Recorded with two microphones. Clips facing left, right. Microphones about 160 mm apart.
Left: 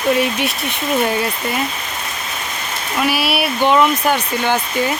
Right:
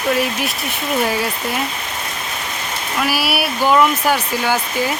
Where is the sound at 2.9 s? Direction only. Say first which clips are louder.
Left 2 dB; centre (ahead or behind).